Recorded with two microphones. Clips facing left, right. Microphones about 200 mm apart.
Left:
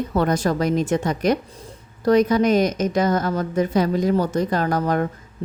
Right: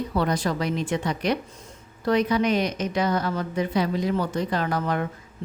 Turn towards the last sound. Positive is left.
turn(degrees=45)  # may be behind; listen again after turning